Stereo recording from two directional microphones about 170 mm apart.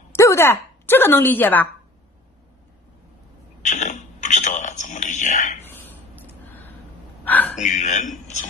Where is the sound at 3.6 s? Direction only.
50° left (ahead or behind).